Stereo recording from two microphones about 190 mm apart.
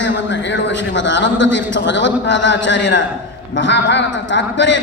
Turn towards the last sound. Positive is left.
turn(degrees=70)  # may be behind; listen again after turning